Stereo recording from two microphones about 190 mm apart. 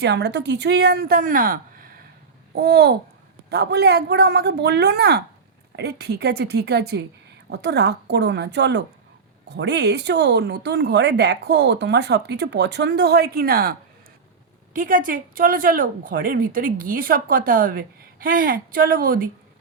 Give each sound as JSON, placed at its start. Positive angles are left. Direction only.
{"t": 0.0, "sound": "speech", "side_deg": -65}